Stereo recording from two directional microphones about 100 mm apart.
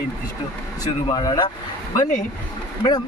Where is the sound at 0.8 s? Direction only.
45° left (ahead or behind).